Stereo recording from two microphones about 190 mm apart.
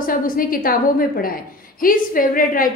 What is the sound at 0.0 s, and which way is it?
A woman's voice, 45° left (ahead or behind).